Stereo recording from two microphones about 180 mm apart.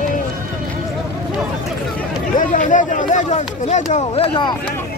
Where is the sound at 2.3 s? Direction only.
45° left (ahead or behind); by 4.5 s 30° left (ahead or behind).